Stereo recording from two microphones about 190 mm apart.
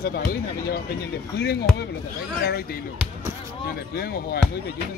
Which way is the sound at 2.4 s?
55° left (ahead or behind).